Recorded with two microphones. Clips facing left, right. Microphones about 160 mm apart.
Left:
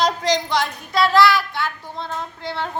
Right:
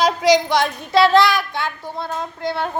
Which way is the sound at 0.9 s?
25° right (ahead or behind).